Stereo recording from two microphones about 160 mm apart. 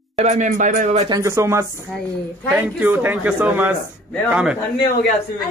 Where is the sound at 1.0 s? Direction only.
20° right (ahead or behind); by 4.6 s 5° right (ahead or behind).